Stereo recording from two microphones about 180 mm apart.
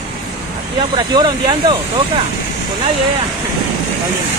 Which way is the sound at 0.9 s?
25° right (ahead or behind).